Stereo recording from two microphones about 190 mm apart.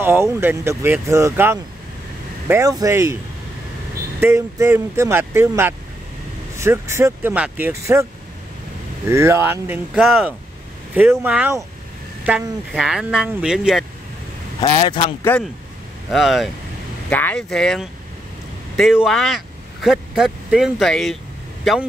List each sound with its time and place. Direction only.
0.0 s speech: 15° right (ahead or behind)
4.2 s speech: 15° right (ahead or behind)
9.1 s speech: 15° right (ahead or behind)
14.6 s a man's voice: 25° left (ahead or behind)
16.1 s speech: centre (ahead or behind)